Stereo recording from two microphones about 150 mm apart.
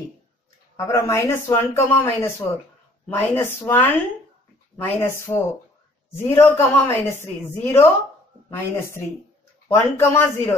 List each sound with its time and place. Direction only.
0.7 s a woman's voice: 20° left (ahead or behind)